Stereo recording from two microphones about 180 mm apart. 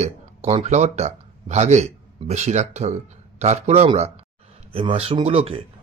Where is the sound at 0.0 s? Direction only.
35° right (ahead or behind).